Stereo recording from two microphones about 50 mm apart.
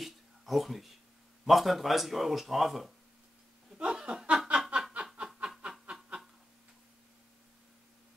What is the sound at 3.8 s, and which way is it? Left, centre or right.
Laughter, centre.